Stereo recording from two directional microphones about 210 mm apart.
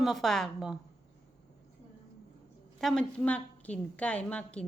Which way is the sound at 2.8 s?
Centre (ahead or behind).